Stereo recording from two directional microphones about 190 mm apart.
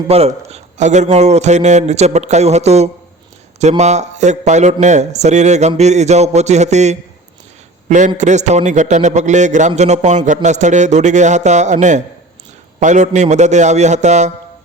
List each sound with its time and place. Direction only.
0.1 s a man's voice: 35° right (ahead or behind)